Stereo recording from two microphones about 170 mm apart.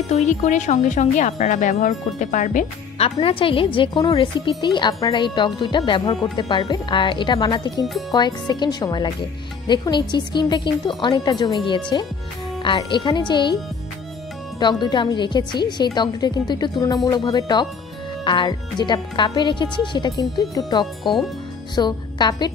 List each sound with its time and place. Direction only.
0.1 s speech: 40° left (ahead or behind)
3.0 s speech: 35° left (ahead or behind)
14.6 s speech: 25° left (ahead or behind)
20.8 s speech: centre (ahead or behind)
21.7 s speech: 25° left (ahead or behind)